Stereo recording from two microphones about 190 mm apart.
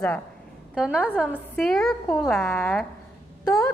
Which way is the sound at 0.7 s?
5° right (ahead or behind).